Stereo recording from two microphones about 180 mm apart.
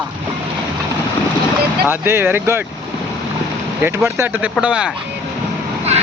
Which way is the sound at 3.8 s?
15° right (ahead or behind).